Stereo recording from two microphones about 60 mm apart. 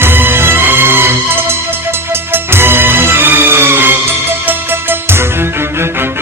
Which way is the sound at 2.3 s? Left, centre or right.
Right.